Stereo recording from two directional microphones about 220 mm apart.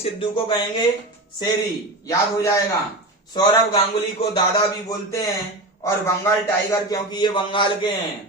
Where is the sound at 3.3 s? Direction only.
20° left (ahead or behind).